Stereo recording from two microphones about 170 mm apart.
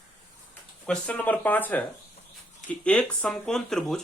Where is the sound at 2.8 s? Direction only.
5° left (ahead or behind).